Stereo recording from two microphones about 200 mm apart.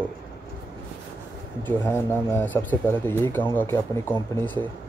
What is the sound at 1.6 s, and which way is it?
Speech, 10° left (ahead or behind).